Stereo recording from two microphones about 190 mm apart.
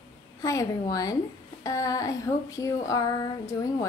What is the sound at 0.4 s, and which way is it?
A woman's voice, 15° left (ahead or behind).